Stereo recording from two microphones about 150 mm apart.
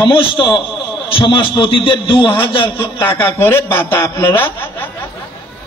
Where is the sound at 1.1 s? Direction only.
35° left (ahead or behind).